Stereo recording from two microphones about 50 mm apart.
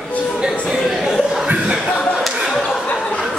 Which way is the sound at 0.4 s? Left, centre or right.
Centre.